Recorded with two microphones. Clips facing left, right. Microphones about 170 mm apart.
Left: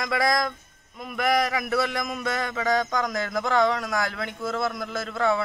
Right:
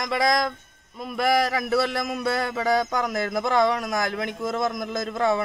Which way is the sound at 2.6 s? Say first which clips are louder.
Even; 10° right (ahead or behind).